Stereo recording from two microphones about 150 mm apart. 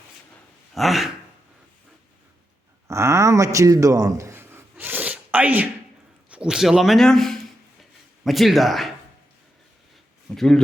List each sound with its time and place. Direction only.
0.7 s gasp: centre (ahead or behind)
2.8 s a sound: 20° right (ahead or behind)
6.3 s speech: 5° right (ahead or behind)
10.2 s speech: 5° left (ahead or behind)